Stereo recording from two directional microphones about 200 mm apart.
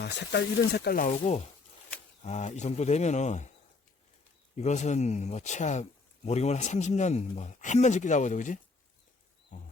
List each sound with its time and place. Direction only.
0.0 s speech: 60° left (ahead or behind)
1.2 s speech: 30° left (ahead or behind)
4.5 s speech: 35° left (ahead or behind)